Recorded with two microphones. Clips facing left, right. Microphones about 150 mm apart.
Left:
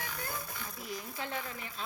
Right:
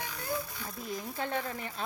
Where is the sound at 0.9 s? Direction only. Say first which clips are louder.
Right 5 dB; 50° right (ahead or behind).